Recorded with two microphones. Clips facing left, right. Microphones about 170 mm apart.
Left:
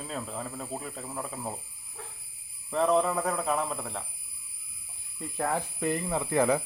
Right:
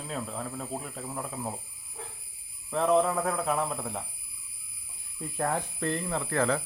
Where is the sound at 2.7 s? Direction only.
Centre (ahead or behind).